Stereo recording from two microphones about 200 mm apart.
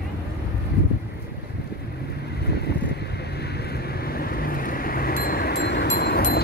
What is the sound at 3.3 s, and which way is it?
Vehicle, 55° left (ahead or behind).